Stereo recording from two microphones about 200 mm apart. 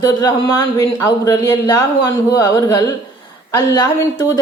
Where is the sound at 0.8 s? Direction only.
15° left (ahead or behind).